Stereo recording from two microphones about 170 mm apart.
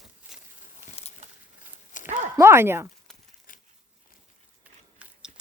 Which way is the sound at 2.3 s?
15° right (ahead or behind).